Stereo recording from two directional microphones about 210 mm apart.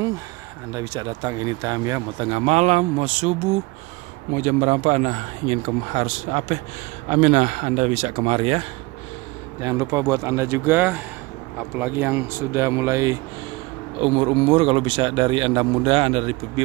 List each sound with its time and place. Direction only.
0.7 s speech: 20° right (ahead or behind)
4.4 s speech: 35° right (ahead or behind)
9.6 s speech: 15° right (ahead or behind)
14.0 s speech: 25° right (ahead or behind)